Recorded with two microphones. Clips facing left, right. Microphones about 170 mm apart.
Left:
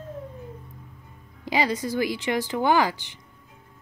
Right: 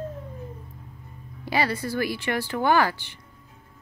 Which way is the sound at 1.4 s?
15° left (ahead or behind).